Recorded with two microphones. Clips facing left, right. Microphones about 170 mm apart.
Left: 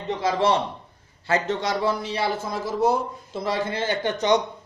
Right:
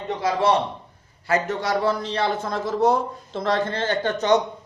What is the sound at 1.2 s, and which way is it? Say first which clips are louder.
Speech: right 1 dB; 25° left (ahead or behind).